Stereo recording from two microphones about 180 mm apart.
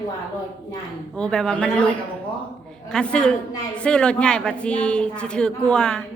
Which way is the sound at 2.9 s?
5° left (ahead or behind).